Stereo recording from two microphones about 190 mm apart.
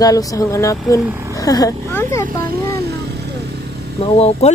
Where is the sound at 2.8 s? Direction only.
60° right (ahead or behind).